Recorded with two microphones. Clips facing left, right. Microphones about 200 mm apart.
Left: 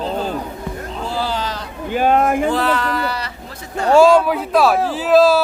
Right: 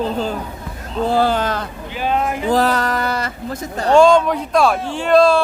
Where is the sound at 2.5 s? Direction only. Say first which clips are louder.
Right 2 dB; 40° right (ahead or behind).